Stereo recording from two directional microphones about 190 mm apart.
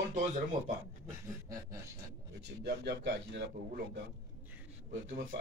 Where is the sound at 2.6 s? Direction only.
60° right (ahead or behind).